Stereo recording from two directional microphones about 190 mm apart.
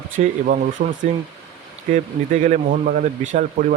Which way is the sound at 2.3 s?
45° right (ahead or behind).